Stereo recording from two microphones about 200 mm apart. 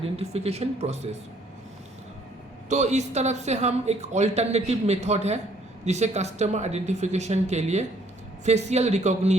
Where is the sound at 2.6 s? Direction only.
35° right (ahead or behind).